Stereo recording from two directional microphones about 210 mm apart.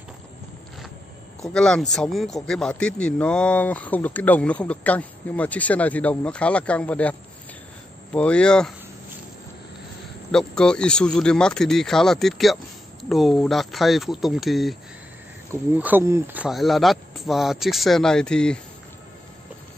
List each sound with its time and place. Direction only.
1.4 s speech: 5° left (ahead or behind)
10.3 s speech: 5° left (ahead or behind)
15.8 s speech: 10° right (ahead or behind)
16.4 s speech: centre (ahead or behind)